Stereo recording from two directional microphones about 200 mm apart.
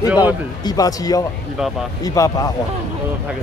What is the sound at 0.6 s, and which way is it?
A man's voice, 20° left (ahead or behind).